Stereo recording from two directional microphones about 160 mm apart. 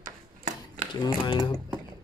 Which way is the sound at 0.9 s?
25° left (ahead or behind).